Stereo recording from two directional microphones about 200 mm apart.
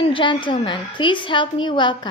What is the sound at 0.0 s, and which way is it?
A woman's voice, 25° left (ahead or behind).